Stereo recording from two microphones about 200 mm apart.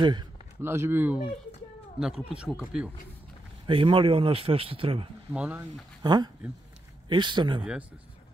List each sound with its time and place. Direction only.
0.0 s speech: 20° right (ahead or behind)
0.6 s speech: 10° right (ahead or behind)
3.6 s speech: 25° right (ahead or behind)
5.3 s speech: 10° right (ahead or behind)
6.0 s speech: 20° right (ahead or behind)